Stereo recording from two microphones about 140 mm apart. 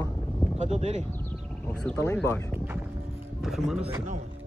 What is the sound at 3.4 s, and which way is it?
Speech, centre (ahead or behind).